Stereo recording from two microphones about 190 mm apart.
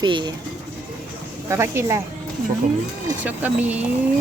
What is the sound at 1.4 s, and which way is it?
Speech, 15° right (ahead or behind).